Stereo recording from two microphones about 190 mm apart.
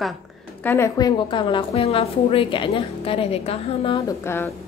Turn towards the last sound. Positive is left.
turn(degrees=10)  # may be behind; listen again after turning